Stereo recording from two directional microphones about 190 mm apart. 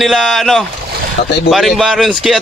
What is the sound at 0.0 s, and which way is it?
Speech, centre (ahead or behind).